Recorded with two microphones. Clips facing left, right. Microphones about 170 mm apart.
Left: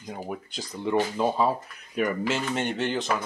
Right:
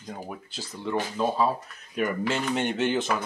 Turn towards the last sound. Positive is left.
turn(degrees=0)  # may be behind; listen again after turning